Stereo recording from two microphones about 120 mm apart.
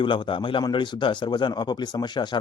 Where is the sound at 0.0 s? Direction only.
45° left (ahead or behind).